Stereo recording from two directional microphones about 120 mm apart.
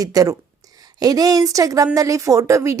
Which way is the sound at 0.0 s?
30° right (ahead or behind).